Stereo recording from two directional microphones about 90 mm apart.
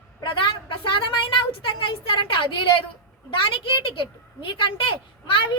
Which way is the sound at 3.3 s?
80° left.